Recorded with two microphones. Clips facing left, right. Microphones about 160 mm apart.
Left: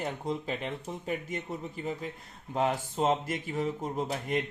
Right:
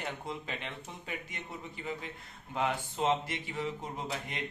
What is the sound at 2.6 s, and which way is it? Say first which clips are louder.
Speech: left 4 dB; 40° left (ahead or behind).